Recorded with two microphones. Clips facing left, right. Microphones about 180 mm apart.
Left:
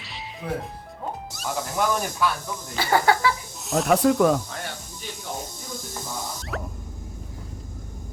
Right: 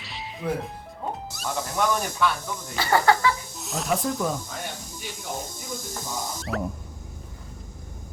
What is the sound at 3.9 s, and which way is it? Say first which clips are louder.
Speech: left 8 dB; 75° left (ahead or behind).